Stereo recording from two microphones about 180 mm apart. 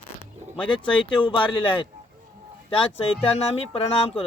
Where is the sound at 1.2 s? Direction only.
25° left (ahead or behind).